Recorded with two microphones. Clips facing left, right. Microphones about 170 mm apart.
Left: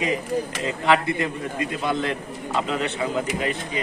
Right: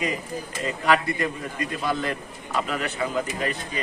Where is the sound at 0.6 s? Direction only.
20° left (ahead or behind).